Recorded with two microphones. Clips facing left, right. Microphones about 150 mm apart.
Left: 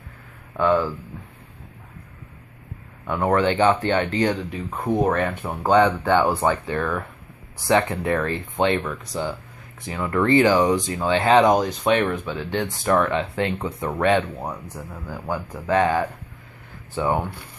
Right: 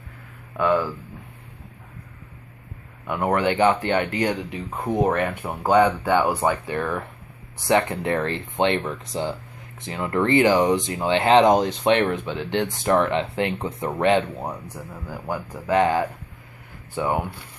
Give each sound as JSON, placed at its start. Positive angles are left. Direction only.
{"t": 0.6, "sound": "speech", "side_deg": -5}
{"t": 3.1, "sound": "speech", "side_deg": -15}